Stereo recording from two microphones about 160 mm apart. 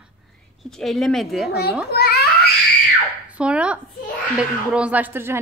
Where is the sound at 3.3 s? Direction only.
5° right (ahead or behind).